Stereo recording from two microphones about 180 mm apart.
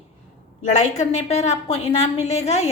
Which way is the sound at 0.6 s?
40° left (ahead or behind).